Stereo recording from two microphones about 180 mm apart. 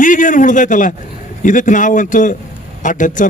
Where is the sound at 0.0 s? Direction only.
45° left (ahead or behind).